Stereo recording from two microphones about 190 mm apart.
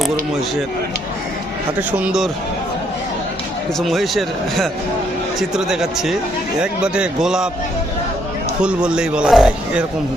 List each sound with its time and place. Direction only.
1.9 s a man's voice: 5° right (ahead or behind)
3.8 s a man's voice: centre (ahead or behind)
8.6 s a man's voice: 5° right (ahead or behind)